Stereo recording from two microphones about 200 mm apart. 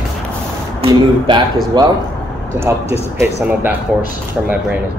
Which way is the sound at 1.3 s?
25° right (ahead or behind).